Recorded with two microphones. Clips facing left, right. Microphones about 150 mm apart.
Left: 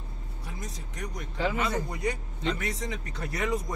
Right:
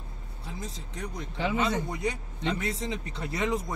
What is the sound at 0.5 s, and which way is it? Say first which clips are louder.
Speech: right 2 dB; 25° right (ahead or behind).